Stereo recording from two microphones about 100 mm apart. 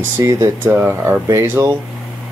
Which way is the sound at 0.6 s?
20° right (ahead or behind).